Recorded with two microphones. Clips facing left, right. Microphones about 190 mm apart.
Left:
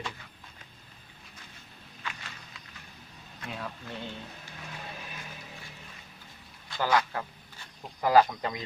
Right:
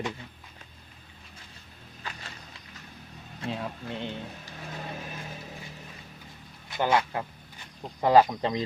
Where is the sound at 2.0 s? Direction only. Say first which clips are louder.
Even; 35° right (ahead or behind).